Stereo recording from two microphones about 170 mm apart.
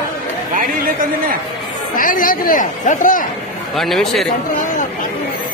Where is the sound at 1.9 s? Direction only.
55° left (ahead or behind).